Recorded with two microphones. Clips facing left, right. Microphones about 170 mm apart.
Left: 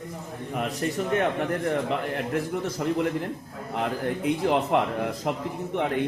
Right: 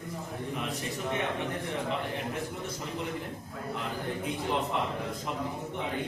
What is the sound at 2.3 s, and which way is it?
Speech, 85° left.